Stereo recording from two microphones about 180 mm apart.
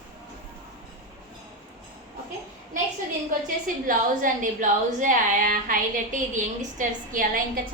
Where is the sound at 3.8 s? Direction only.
45° right (ahead or behind).